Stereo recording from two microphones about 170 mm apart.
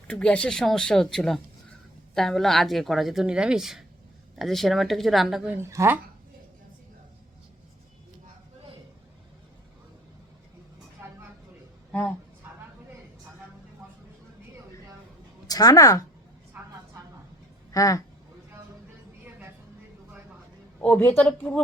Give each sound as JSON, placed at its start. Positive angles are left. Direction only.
{"t": 0.1, "sound": "a woman's voice", "side_deg": 5}
{"t": 5.6, "sound": "speech", "side_deg": -15}
{"t": 11.9, "sound": "speech", "side_deg": 5}
{"t": 15.4, "sound": "a woman's voice", "side_deg": 20}
{"t": 17.7, "sound": "speech", "side_deg": 20}
{"t": 20.8, "sound": "speech", "side_deg": 10}